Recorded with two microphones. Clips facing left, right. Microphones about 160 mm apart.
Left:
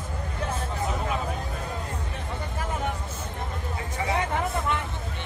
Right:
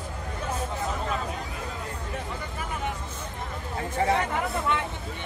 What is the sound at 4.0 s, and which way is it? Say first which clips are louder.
Hubbub: right 5 dB; 50° right (ahead or behind).